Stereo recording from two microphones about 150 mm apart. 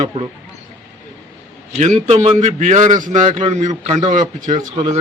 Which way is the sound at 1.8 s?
50° right (ahead or behind).